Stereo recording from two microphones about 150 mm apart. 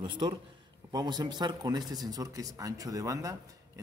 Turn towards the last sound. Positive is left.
turn(degrees=-20)  # may be behind; listen again after turning